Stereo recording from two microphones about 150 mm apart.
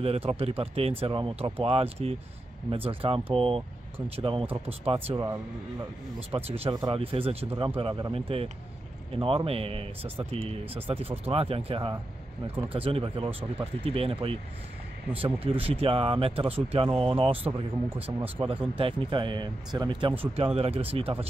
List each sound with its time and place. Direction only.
0.0 s speech: 40° right (ahead or behind)
5.1 s speech: 20° right (ahead or behind)
6.1 s speech: 40° right (ahead or behind)